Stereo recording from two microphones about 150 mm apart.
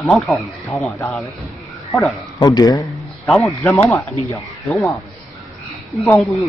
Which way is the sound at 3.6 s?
20° left (ahead or behind).